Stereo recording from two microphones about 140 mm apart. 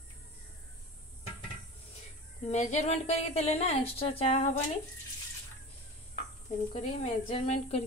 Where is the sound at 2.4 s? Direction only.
50° left (ahead or behind).